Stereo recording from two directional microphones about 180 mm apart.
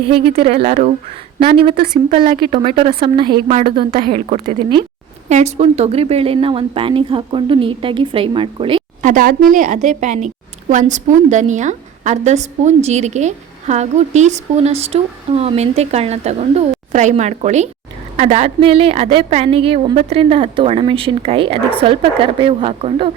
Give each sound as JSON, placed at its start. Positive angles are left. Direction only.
{"t": 0.1, "sound": "a woman's voice", "side_deg": -30}
{"t": 2.0, "sound": "a woman's voice", "side_deg": -35}
{"t": 5.3, "sound": "speech", "side_deg": -40}
{"t": 9.0, "sound": "a woman's voice", "side_deg": -45}